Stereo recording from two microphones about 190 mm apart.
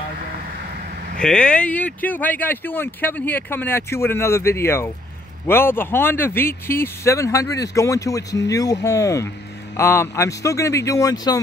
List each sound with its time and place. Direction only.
1.2 s speech: 5° left (ahead or behind)